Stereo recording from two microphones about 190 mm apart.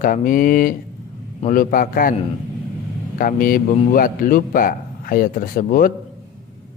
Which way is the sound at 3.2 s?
50° left (ahead or behind).